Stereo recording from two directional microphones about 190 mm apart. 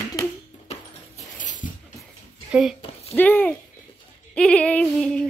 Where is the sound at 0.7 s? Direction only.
40° left (ahead or behind).